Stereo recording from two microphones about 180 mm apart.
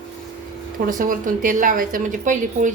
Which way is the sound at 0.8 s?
50° right (ahead or behind).